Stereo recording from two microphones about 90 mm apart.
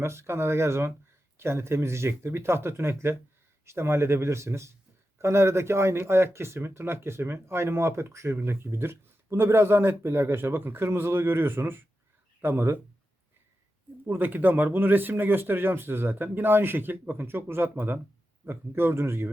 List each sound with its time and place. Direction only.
0.0 s speech: 30° right (ahead or behind)
14.1 s speech: 20° right (ahead or behind)